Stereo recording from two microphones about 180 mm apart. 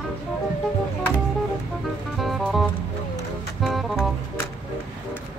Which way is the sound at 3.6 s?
Centre (ahead or behind).